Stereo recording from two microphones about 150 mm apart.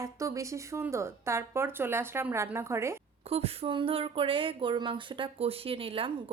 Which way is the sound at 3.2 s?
40° right (ahead or behind).